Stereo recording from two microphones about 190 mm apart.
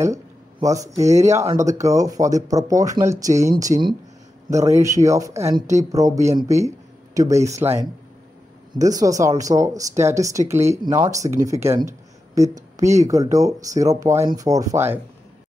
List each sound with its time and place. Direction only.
0.0 s speech: 15° right (ahead or behind)
8.7 s speech: 20° right (ahead or behind)